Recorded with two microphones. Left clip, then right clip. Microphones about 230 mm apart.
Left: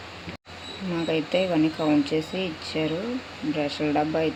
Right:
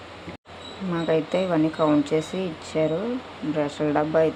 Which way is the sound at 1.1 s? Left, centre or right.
Centre.